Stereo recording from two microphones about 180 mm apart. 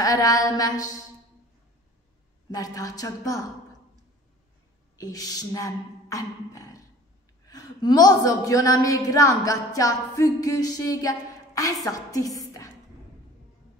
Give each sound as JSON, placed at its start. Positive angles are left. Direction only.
{"t": 0.0, "sound": "a woman's voice", "side_deg": 20}
{"t": 2.5, "sound": "a woman's voice", "side_deg": 20}
{"t": 4.9, "sound": "a woman's voice", "side_deg": 20}